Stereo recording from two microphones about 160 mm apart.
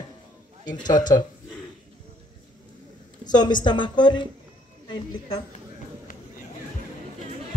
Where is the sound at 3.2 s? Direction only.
25° left (ahead or behind).